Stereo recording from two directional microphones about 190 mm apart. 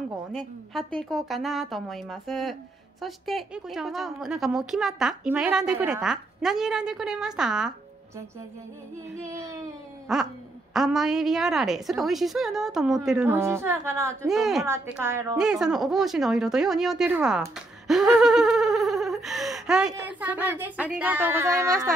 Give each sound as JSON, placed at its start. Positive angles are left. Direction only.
{"t": 0.3, "sound": "a woman's voice", "side_deg": 0}
{"t": 9.3, "sound": "a woman's voice", "side_deg": -15}
{"t": 10.1, "sound": "a woman's voice", "side_deg": 0}
{"t": 13.3, "sound": "a woman's voice", "side_deg": -15}
{"t": 14.3, "sound": "a woman's voice", "side_deg": 0}
{"t": 17.8, "sound": "gasp", "side_deg": 0}
{"t": 20.1, "sound": "a woman's voice", "side_deg": -10}